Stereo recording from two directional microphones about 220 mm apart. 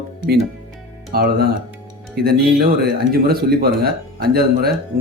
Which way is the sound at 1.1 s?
45° right (ahead or behind).